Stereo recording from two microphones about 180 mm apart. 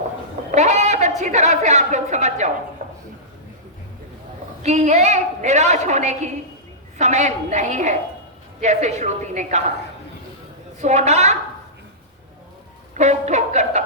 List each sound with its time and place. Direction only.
0.5 s a sound: 40° right (ahead or behind)
1.2 s a woman's voice: 40° right (ahead or behind)
4.6 s a woman's voice: 40° right (ahead or behind)
10.8 s a woman's voice: 40° right (ahead or behind)
13.0 s a woman's voice: 40° right (ahead or behind)